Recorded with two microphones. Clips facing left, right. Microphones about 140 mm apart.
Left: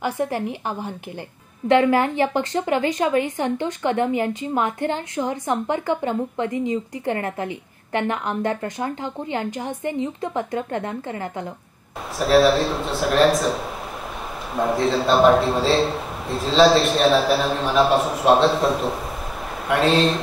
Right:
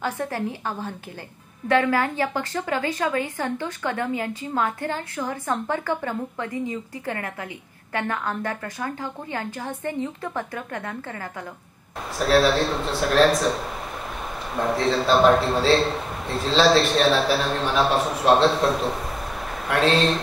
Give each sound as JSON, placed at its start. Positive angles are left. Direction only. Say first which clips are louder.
{"t": 0.0, "sound": "a woman's voice", "louder": "left 3 dB", "side_deg": 15}
{"t": 12.2, "sound": "a man's voice", "louder": "left 3 dB", "side_deg": 0}